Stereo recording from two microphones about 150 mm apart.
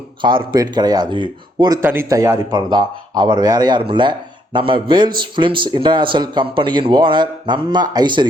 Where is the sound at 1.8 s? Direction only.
15° right (ahead or behind).